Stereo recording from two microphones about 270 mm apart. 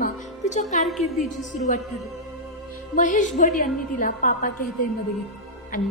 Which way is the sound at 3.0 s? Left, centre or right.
Left.